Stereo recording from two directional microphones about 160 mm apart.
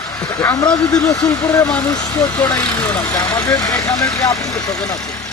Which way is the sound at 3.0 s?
20° left (ahead or behind).